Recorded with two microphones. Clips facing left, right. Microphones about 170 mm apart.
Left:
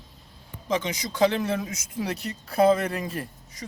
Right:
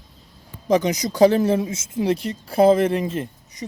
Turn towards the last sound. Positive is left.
turn(degrees=-25)  # may be behind; listen again after turning